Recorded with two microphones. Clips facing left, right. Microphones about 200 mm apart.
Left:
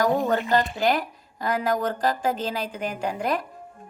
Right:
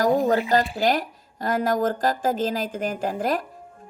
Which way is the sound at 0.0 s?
40° right (ahead or behind).